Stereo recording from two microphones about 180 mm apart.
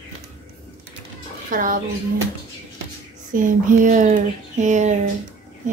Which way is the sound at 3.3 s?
45° right (ahead or behind).